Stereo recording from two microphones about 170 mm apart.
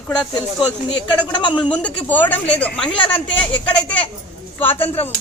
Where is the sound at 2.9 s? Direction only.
30° left (ahead or behind).